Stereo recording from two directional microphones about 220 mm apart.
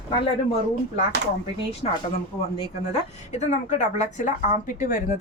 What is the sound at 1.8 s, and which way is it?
Speech, 30° left (ahead or behind).